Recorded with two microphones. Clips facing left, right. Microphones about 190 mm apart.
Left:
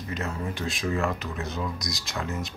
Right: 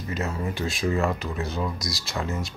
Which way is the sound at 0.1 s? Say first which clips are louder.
Right 3 dB; centre (ahead or behind).